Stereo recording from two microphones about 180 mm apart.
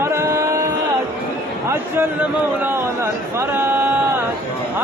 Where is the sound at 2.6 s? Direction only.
15° right (ahead or behind).